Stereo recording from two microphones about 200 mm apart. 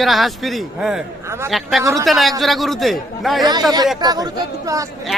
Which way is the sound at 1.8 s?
15° right (ahead or behind).